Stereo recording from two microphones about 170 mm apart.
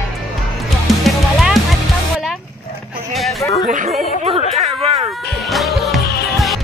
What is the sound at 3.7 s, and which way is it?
Speech, 45° right (ahead or behind).